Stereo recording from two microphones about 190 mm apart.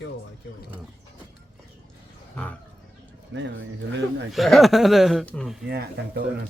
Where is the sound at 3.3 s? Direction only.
75° right (ahead or behind).